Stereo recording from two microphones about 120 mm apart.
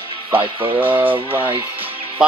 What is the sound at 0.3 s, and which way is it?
Speech, 45° right (ahead or behind).